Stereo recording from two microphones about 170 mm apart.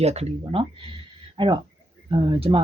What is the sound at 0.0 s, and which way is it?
Speech, 40° right (ahead or behind).